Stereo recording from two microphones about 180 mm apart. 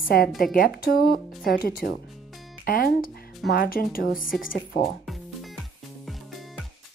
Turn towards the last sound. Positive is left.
turn(degrees=0)  # may be behind; listen again after turning